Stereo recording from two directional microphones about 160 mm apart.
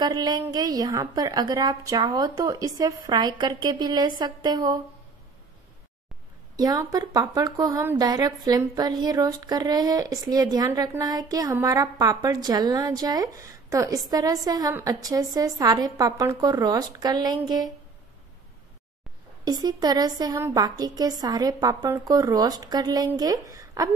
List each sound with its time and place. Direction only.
0.0 s speech: 25° right (ahead or behind)
6.5 s speech: 25° right (ahead or behind)
19.4 s speech: 25° right (ahead or behind)
23.6 s a sound: 20° right (ahead or behind)